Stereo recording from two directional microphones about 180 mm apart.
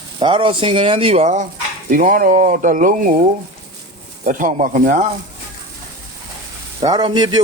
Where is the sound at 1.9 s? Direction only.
50° right (ahead or behind).